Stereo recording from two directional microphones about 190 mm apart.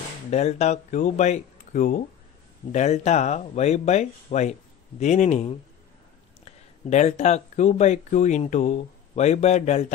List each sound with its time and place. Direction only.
0.3 s speech: 35° left (ahead or behind)
6.9 s speech: 35° left (ahead or behind)